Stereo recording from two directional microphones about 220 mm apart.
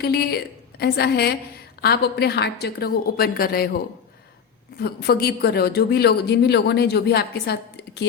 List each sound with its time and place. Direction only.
0.0 s speech: 45° left (ahead or behind)
4.8 s speech: 45° left (ahead or behind)